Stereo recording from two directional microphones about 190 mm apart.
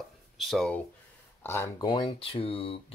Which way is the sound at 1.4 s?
15° left (ahead or behind).